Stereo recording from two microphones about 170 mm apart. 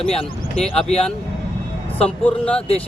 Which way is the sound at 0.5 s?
5° left (ahead or behind).